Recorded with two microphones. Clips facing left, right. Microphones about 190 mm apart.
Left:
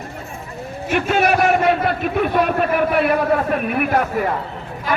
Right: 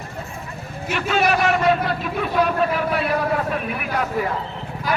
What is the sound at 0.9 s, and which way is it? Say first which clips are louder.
A man's voice: left 3 dB; 50° left (ahead or behind).